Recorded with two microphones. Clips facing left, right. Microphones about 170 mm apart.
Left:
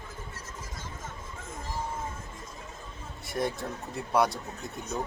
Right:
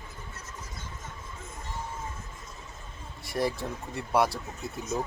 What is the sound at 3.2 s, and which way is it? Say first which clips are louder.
Speech: right 2 dB; centre (ahead or behind).